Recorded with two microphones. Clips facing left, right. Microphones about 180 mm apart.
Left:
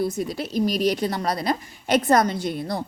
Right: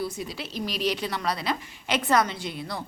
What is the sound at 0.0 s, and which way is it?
A woman's voice, 50° left (ahead or behind).